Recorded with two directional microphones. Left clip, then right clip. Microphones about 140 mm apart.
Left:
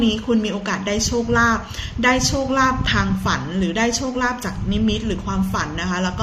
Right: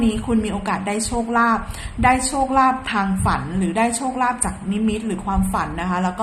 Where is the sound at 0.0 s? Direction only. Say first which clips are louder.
Left 2 dB; 25° right (ahead or behind).